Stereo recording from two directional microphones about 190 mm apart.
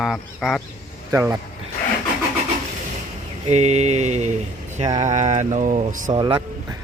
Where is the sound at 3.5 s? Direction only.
35° right (ahead or behind).